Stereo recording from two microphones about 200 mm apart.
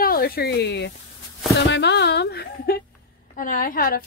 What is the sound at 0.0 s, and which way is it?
A woman's voice, 50° left (ahead or behind).